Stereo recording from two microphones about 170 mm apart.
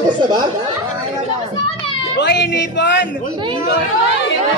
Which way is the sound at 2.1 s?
75° left (ahead or behind).